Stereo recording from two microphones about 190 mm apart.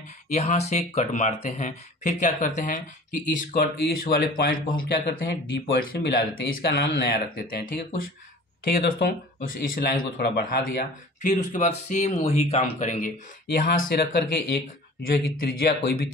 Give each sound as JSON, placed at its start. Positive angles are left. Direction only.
{"t": 0.3, "sound": "speech", "side_deg": 35}
{"t": 8.7, "sound": "speech", "side_deg": 50}
{"t": 11.3, "sound": "speech", "side_deg": 40}
{"t": 13.5, "sound": "speech", "side_deg": 50}